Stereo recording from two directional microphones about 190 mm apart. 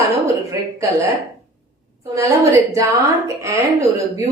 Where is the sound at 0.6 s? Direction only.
15° right (ahead or behind).